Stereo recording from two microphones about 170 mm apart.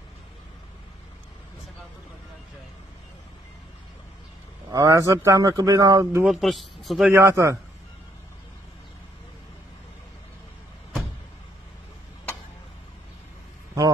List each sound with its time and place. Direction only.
4.7 s speech: 20° right (ahead or behind)
6.2 s a man's voice: centre (ahead or behind)
7.1 s a man's voice: 15° right (ahead or behind)